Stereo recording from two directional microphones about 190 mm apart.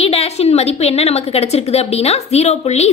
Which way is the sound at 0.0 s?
30° left (ahead or behind).